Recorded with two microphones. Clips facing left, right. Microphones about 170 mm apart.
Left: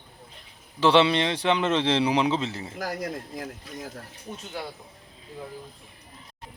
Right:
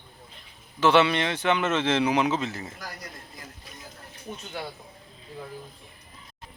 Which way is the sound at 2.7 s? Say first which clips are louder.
Left 10 dB; 90° left.